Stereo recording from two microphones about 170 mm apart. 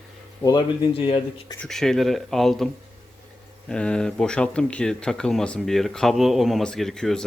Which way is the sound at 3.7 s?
5° left (ahead or behind).